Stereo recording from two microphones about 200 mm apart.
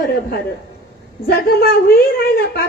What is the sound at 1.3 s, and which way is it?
Speech, 45° left (ahead or behind).